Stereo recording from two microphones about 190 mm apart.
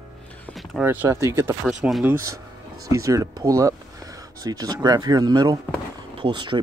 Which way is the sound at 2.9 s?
15° right (ahead or behind).